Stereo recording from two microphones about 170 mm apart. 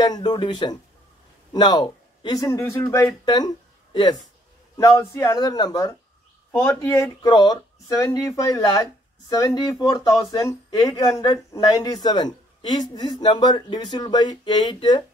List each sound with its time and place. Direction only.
0.0 s speech: 25° left (ahead or behind)
6.9 s speech: 20° left (ahead or behind)